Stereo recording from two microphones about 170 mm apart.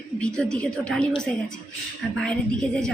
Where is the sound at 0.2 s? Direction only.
5° left (ahead or behind).